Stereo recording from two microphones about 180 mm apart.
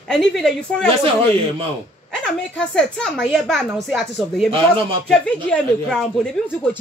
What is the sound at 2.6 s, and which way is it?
A woman's voice, 5° left (ahead or behind).